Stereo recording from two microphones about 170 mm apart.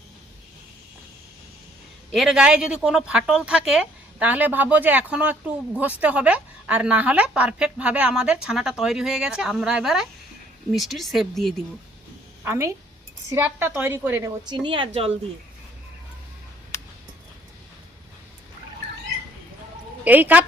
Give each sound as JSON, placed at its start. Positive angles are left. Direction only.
{"t": 2.1, "sound": "a woman's voice", "side_deg": -5}
{"t": 12.5, "sound": "a woman's voice", "side_deg": -15}
{"t": 14.5, "sound": "a woman's voice", "side_deg": -30}
{"t": 20.1, "sound": "a woman's voice", "side_deg": -10}